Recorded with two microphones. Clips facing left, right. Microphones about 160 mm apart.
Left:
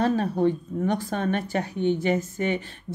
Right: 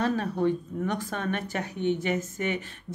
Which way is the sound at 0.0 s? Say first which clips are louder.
Left 4 dB; 30° left (ahead or behind).